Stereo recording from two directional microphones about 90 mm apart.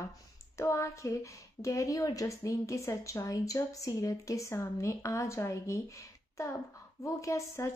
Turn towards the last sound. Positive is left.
turn(degrees=35)  # may be behind; listen again after turning